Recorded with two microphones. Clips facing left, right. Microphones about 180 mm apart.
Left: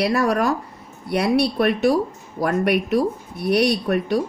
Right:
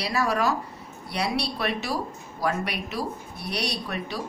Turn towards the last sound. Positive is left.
turn(degrees=55)  # may be behind; listen again after turning